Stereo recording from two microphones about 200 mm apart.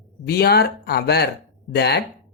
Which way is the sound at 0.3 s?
50° left (ahead or behind).